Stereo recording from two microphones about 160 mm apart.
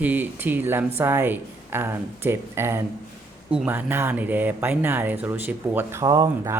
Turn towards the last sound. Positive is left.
turn(degrees=-20)  # may be behind; listen again after turning